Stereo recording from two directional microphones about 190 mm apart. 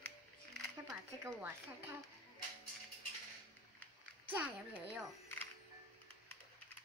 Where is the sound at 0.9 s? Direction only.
15° right (ahead or behind).